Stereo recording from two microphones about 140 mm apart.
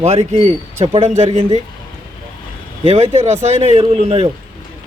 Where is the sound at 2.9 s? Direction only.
45° right (ahead or behind).